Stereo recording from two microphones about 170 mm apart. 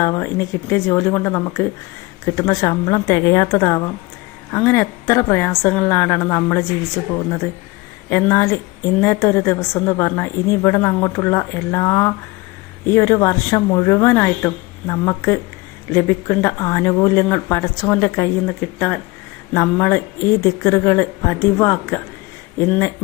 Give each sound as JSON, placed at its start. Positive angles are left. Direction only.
{"t": 0.0, "sound": "a woman's voice", "side_deg": 15}